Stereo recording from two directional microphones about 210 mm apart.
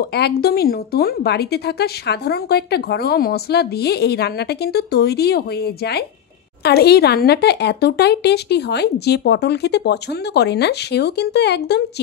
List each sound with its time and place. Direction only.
0.0 s a woman's voice: 50° left (ahead or behind)